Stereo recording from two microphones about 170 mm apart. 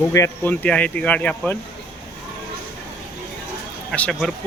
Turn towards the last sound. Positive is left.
turn(degrees=5)  # may be behind; listen again after turning